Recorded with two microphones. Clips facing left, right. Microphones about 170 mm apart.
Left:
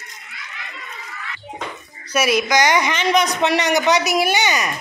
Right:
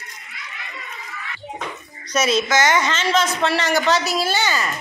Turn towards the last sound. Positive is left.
turn(degrees=15)  # may be behind; listen again after turning